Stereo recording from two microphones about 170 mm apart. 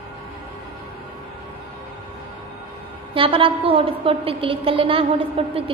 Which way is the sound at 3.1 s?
30° right (ahead or behind).